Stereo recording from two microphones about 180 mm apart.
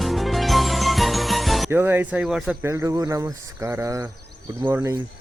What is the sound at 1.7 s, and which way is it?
Speech, 15° right (ahead or behind).